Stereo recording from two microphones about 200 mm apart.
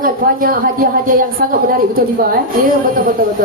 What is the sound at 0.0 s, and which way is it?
Speech, 45° right (ahead or behind).